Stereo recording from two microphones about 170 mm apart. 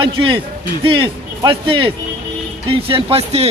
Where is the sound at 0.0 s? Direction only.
30° right (ahead or behind).